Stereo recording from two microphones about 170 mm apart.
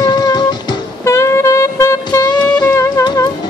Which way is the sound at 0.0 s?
25° left (ahead or behind).